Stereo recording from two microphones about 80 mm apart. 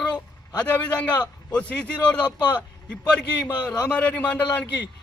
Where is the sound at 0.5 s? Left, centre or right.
Centre.